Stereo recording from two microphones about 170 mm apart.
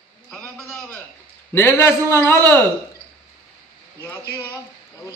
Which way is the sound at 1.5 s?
15° left (ahead or behind).